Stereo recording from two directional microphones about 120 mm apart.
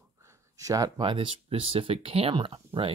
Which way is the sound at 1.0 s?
45° right (ahead or behind).